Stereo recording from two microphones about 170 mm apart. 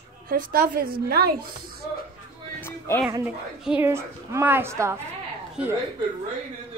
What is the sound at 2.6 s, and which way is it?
Music, 15° left (ahead or behind).